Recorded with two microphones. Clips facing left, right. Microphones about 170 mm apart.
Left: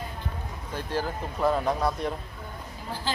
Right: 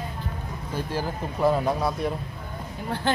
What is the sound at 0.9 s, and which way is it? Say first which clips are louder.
Speech: left 2 dB; 5° right (ahead or behind).